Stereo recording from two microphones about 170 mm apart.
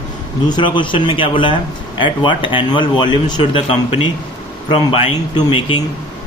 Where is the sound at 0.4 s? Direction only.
25° left (ahead or behind).